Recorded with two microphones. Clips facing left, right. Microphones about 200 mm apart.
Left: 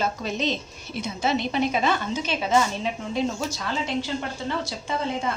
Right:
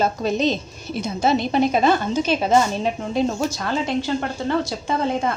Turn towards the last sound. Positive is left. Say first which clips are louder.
# right 5 dB
turn(degrees=-45)  # may be behind; listen again after turning